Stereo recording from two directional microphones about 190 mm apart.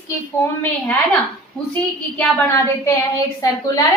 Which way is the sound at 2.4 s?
15° left (ahead or behind).